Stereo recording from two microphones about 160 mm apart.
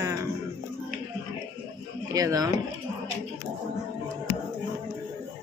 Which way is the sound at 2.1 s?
20° right (ahead or behind).